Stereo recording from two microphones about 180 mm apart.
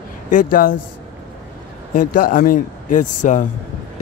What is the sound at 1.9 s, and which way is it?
A man's voice, 50° left (ahead or behind).